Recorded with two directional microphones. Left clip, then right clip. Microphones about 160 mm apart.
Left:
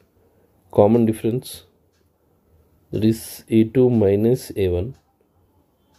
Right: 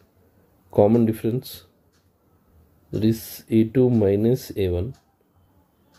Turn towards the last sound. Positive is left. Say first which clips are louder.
# left 3 dB
turn(degrees=25)  # may be behind; listen again after turning